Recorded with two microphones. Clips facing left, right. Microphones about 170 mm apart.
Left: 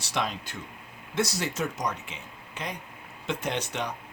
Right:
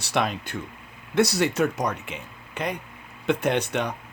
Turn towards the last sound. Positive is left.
turn(degrees=-60)  # may be behind; listen again after turning